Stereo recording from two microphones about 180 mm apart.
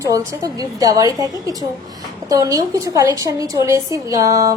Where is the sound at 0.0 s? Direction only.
20° right (ahead or behind).